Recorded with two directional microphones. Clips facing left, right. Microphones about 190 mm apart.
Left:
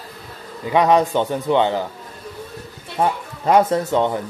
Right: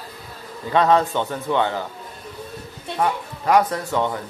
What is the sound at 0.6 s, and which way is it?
A man's voice, 15° left (ahead or behind).